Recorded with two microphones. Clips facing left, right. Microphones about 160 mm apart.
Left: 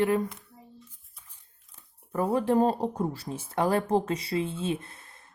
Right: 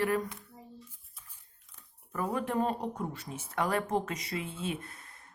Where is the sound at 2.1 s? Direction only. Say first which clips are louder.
Left 7 dB; 30° left (ahead or behind).